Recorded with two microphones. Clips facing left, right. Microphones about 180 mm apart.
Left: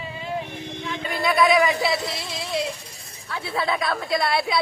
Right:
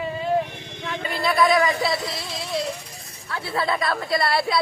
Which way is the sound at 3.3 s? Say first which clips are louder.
Right 1 dB; centre (ahead or behind).